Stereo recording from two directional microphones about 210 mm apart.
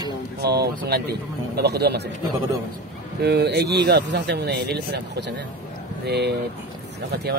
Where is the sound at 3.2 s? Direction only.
50° right (ahead or behind).